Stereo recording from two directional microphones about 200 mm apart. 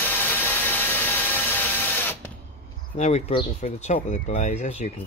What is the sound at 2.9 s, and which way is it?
Speech, 35° left (ahead or behind).